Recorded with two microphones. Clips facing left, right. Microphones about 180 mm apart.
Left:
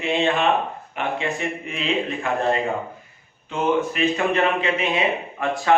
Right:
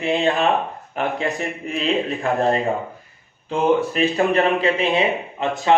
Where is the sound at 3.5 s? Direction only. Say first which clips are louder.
Right 3 dB; 35° right (ahead or behind).